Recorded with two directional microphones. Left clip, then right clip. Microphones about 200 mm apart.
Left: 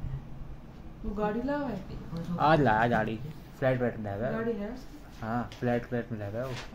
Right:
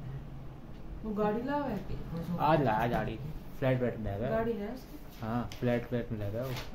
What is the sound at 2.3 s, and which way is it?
Speech, 45° left (ahead or behind).